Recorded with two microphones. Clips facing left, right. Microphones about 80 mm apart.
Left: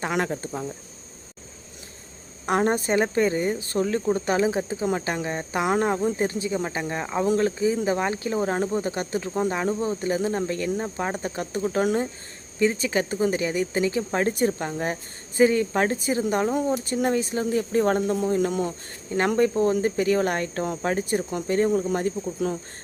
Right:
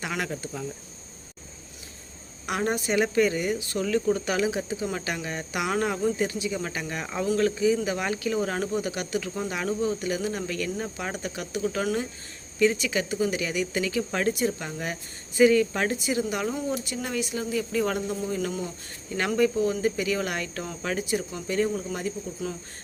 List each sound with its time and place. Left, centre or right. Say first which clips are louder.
0.0 s speech: left 5 dB; left
2.5 s speech: left 5 dB; left